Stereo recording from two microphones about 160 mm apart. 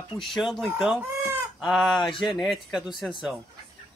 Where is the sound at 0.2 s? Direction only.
Centre (ahead or behind).